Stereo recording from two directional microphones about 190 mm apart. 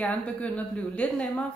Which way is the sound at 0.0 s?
5° left (ahead or behind).